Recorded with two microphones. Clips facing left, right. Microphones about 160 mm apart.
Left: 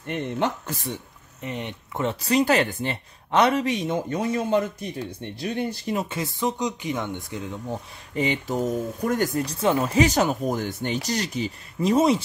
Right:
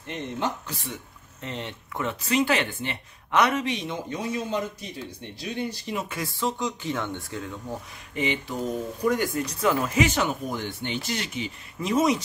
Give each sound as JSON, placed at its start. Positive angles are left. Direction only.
{"t": 0.0, "sound": "speech", "side_deg": 55}
{"t": 1.4, "sound": "speech", "side_deg": 15}
{"t": 2.0, "sound": "speech", "side_deg": 35}
{"t": 3.6, "sound": "speech", "side_deg": 45}
{"t": 6.0, "sound": "speech", "side_deg": 20}
{"t": 8.1, "sound": "speech", "side_deg": 40}
{"t": 9.6, "sound": "speech", "side_deg": 25}